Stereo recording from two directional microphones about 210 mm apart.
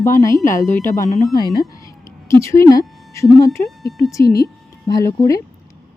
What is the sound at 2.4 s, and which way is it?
Speech, 15° left (ahead or behind).